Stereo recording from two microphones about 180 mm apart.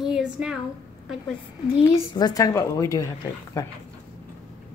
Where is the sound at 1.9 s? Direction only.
20° left (ahead or behind).